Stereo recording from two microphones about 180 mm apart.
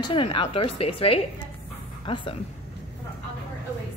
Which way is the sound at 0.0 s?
30° left (ahead or behind).